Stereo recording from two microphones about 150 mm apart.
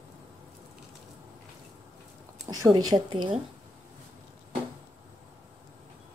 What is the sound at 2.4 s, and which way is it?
Speech, 25° right (ahead or behind).